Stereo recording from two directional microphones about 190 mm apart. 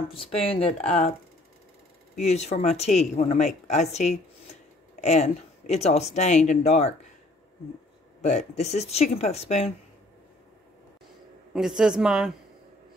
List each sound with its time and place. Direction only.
0.1 s speech: 30° left (ahead or behind)
2.1 s speech: 35° left (ahead or behind)
8.2 s speech: 35° left (ahead or behind)
11.5 s a woman's voice: 5° right (ahead or behind)